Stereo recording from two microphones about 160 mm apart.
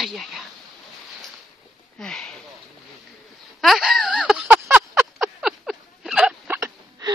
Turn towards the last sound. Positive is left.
turn(degrees=-20)  # may be behind; listen again after turning